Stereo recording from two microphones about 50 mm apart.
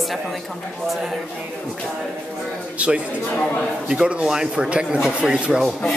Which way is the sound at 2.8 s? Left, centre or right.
Right.